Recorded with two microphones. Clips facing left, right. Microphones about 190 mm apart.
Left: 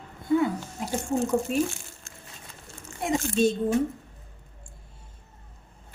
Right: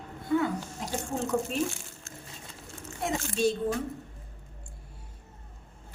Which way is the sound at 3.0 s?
20° left (ahead or behind).